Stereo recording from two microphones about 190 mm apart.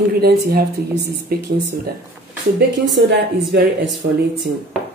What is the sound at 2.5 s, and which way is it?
Speech, 65° right (ahead or behind).